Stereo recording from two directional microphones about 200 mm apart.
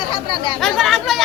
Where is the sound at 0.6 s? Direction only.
Centre (ahead or behind).